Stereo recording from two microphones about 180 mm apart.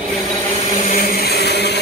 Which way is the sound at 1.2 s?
65° left (ahead or behind).